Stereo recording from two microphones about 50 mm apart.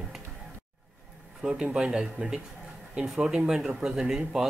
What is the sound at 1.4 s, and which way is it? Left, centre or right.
Speech, centre.